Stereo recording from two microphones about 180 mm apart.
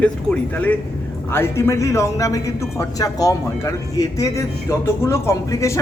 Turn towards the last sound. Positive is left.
turn(degrees=15)  # may be behind; listen again after turning